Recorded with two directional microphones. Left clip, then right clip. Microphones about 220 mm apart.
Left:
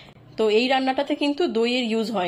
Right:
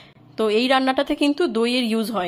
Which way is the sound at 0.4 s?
15° right (ahead or behind).